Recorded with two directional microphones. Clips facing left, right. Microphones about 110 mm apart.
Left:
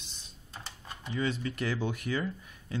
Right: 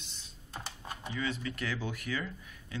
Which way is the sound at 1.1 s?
30° left (ahead or behind).